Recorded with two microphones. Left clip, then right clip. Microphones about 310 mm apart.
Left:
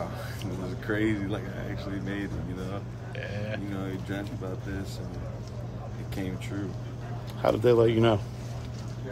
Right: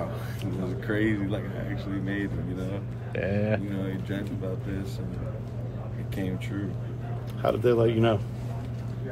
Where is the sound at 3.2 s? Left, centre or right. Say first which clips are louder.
Right 8 dB; centre.